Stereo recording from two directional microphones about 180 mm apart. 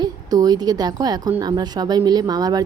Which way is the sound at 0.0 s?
20° right (ahead or behind).